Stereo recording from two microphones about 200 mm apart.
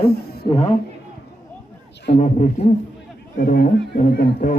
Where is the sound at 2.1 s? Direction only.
35° left (ahead or behind).